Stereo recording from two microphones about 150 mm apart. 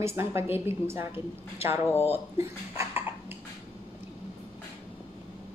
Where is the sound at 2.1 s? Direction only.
15° right (ahead or behind).